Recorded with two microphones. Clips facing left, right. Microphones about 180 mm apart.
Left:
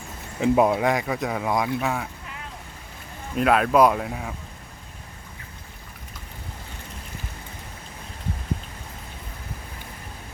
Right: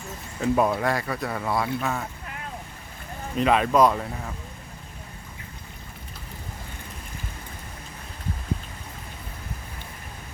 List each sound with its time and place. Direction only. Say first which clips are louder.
0.3 s speech: left 3 dB; 15° left (ahead or behind)
3.3 s speech: left 1 dB; 5° left (ahead or behind)